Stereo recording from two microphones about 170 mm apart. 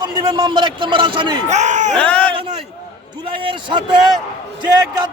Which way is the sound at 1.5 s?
45° right (ahead or behind).